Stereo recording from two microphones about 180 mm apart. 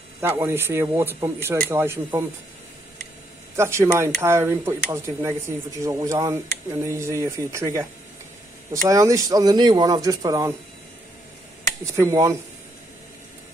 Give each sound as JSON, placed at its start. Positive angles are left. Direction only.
{"t": 0.2, "sound": "speech", "side_deg": -15}
{"t": 3.5, "sound": "speech", "side_deg": -15}
{"t": 8.8, "sound": "a man's voice", "side_deg": -20}
{"t": 11.8, "sound": "speech", "side_deg": -15}